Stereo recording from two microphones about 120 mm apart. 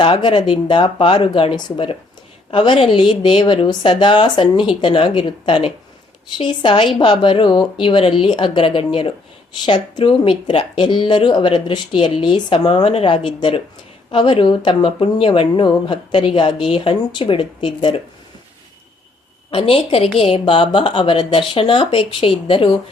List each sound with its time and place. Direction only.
0.0 s speech: 45° left (ahead or behind)
19.5 s speech: 50° left (ahead or behind)
20.4 s speech: 45° left (ahead or behind)